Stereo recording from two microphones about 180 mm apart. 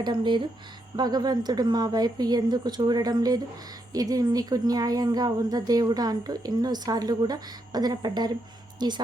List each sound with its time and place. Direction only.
0.0 s a woman's voice: 25° right (ahead or behind)